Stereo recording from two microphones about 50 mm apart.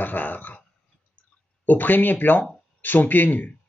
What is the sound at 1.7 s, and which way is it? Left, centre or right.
Speech, left.